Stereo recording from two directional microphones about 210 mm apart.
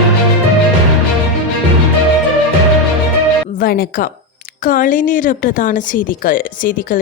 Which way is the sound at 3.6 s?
45° left (ahead or behind).